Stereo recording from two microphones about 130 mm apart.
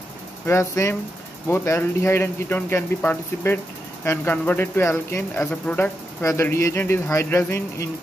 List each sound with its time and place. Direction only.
0.5 s speech: 20° left (ahead or behind)